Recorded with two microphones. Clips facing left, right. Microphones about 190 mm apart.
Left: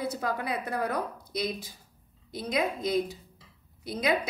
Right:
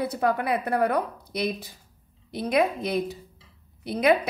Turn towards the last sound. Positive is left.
turn(degrees=-60)  # may be behind; listen again after turning